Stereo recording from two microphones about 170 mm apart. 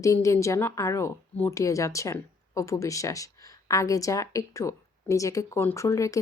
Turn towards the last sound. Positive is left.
turn(degrees=20)  # may be behind; listen again after turning